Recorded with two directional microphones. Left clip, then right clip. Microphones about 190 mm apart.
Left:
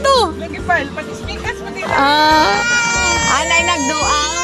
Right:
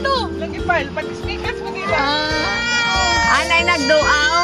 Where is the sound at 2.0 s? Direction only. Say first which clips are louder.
Left 9 dB; 45° left (ahead or behind).